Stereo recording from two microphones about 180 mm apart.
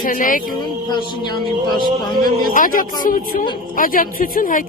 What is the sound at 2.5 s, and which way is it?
Speech, 50° left (ahead or behind).